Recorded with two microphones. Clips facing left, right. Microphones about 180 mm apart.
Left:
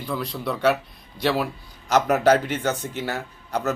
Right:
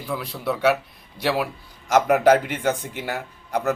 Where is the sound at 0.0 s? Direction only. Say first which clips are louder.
Even; 10° right (ahead or behind).